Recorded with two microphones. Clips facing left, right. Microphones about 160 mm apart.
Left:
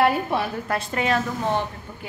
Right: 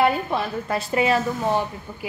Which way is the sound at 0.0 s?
Centre (ahead or behind).